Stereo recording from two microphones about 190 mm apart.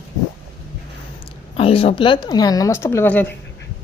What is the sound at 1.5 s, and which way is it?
Speech, 30° left (ahead or behind).